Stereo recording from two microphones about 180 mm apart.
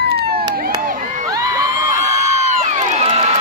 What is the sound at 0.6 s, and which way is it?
Crowd, 50° right (ahead or behind).